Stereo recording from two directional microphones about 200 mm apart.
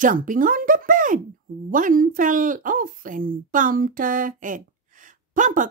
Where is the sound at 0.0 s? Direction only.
40° right (ahead or behind).